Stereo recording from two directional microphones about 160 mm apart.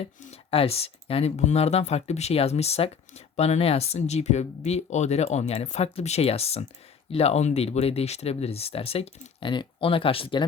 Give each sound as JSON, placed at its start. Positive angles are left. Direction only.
{"t": 0.2, "sound": "speech", "side_deg": 40}